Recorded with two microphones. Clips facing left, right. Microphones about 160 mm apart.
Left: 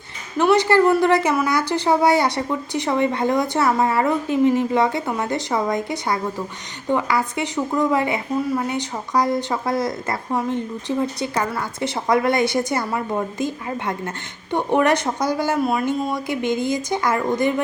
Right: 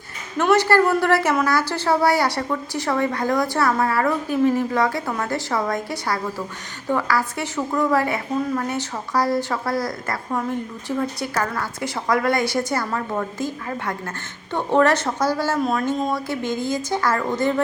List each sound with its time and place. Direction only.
0.3 s a woman's voice: 15° left (ahead or behind)